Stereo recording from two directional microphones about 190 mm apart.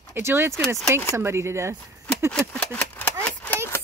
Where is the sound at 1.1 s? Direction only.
15° right (ahead or behind).